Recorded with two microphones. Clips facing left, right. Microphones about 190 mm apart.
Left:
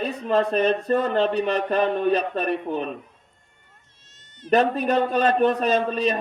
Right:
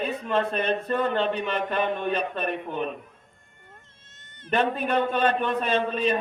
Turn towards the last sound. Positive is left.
turn(degrees=40)  # may be behind; listen again after turning